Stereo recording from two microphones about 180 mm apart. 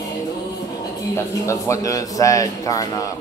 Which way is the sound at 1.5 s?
20° left (ahead or behind).